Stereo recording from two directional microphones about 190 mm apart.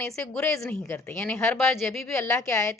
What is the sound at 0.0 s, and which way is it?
Speech, 10° left (ahead or behind).